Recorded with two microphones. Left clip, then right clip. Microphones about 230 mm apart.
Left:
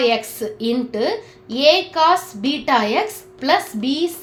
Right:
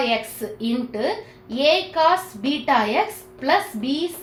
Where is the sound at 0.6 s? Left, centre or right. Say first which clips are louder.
Left 4 dB; left.